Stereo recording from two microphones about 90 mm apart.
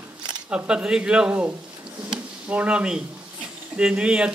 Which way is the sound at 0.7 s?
10° right (ahead or behind).